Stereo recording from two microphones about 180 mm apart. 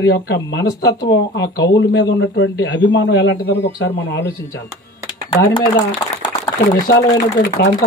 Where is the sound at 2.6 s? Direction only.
85° left.